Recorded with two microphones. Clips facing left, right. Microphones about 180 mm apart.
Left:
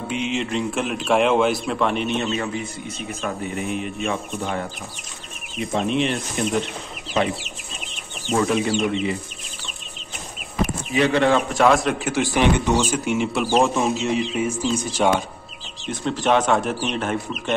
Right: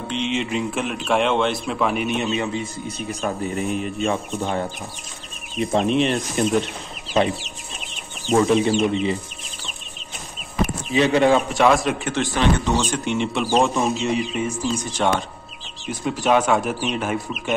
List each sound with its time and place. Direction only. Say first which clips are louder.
0.1 s speech: right 1 dB; 5° left (ahead or behind)
2.0 s a man's voice: right 1 dB; 15° right (ahead or behind)
3.1 s speech: right 3 dB; 35° right (ahead or behind)
5.7 s speech: right 2 dB; 35° right (ahead or behind)
8.5 s speech: right 3 dB; 35° right (ahead or behind)
10.9 s a man's voice: right 2 dB; 20° right (ahead or behind)
11.4 s speech: even; centre (ahead or behind)
12.4 s speech: left 2 dB; 15° left (ahead or behind)
12.8 s speech: left 1 dB; 5° left (ahead or behind)
15.9 s speech: right 1 dB; 5° right (ahead or behind)